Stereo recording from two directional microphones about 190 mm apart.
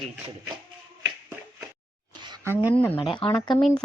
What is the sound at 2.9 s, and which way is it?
Speech, 25° left (ahead or behind).